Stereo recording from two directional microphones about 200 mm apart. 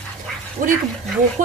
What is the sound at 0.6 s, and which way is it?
Speech, 40° right (ahead or behind).